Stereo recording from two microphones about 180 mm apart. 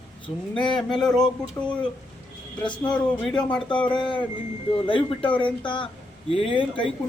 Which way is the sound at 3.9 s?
25° left (ahead or behind).